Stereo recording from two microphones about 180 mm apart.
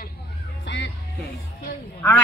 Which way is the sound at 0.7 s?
70° left (ahead or behind).